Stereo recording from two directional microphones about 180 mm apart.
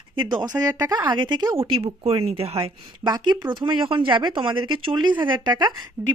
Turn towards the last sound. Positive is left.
turn(degrees=-10)  # may be behind; listen again after turning